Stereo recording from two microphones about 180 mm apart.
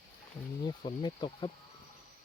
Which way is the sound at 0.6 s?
25° left (ahead or behind).